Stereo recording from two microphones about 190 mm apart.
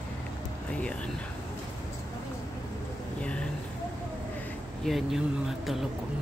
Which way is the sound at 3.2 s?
5° left (ahead or behind).